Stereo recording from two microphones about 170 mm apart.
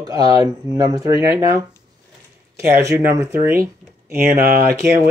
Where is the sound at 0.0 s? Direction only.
20° right (ahead or behind).